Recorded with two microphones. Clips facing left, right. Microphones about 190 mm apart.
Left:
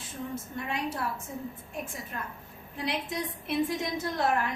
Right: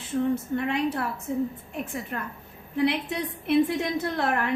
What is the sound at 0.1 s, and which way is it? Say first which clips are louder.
A woman's voice: right 12 dB; 65° right (ahead or behind).